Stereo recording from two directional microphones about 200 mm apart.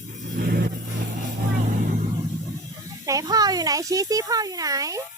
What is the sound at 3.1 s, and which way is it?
Speech, 20° right (ahead or behind).